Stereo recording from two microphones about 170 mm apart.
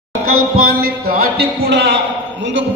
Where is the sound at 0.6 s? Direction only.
60° right (ahead or behind).